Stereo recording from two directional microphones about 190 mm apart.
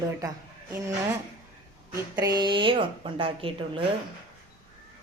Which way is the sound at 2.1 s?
20° right (ahead or behind).